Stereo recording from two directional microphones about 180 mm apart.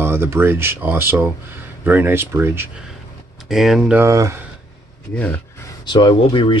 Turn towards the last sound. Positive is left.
turn(degrees=30)  # may be behind; listen again after turning